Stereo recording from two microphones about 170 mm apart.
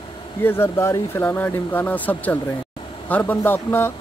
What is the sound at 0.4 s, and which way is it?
Speech, 15° left (ahead or behind).